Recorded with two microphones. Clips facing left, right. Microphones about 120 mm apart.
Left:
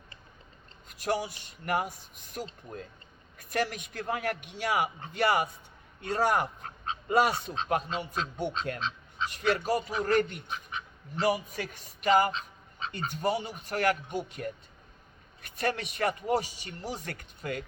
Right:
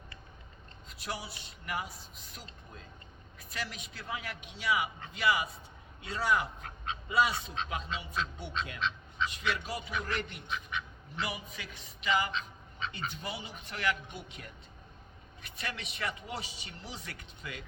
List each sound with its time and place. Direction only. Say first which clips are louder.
0.9 s speech: left 10 dB; 50° left (ahead or behind)
8.8 s duck: even; 35° left (ahead or behind)
9.3 s speech: left 8 dB; 40° left (ahead or behind)